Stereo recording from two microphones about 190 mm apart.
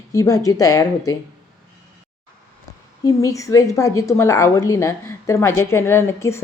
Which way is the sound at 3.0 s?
15° left (ahead or behind).